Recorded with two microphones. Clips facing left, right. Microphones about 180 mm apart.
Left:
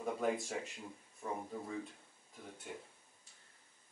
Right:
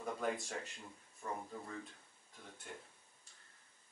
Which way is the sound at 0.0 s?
5° left (ahead or behind).